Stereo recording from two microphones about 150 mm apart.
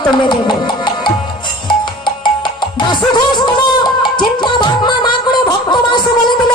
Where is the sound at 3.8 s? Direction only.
30° left (ahead or behind).